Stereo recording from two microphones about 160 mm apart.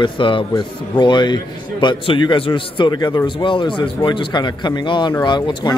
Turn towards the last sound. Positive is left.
turn(degrees=30)  # may be behind; listen again after turning